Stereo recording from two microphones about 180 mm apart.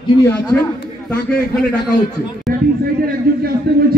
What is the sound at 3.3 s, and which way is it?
Speech, 60° right (ahead or behind).